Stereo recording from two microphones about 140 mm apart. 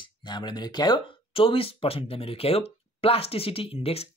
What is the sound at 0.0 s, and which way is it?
Speech, 35° left (ahead or behind).